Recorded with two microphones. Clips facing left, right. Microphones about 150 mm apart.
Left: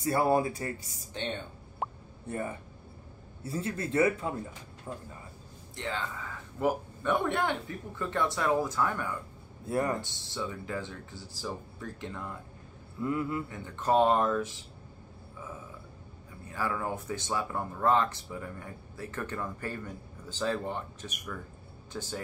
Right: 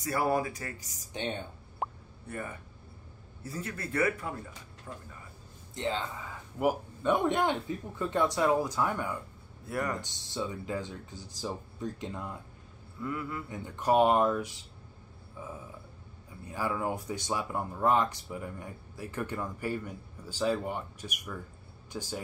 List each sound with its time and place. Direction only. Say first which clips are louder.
0.0 s speech: left 3 dB; 25° left (ahead or behind)
1.1 s speech: right 1 dB; 15° right (ahead or behind)
1.8 s plop: even; centre (ahead or behind)
2.2 s speech: left 4 dB; 25° left (ahead or behind)
5.8 s speech: right 3 dB; 20° right (ahead or behind)
9.7 s speech: left 4 dB; 25° left (ahead or behind)
10.0 s speech: right 1 dB; 20° right (ahead or behind)
13.0 s speech: left 5 dB; 25° left (ahead or behind)
13.5 s speech: right 4 dB; 15° right (ahead or behind)
16.5 s speech: right 1 dB; 15° right (ahead or behind)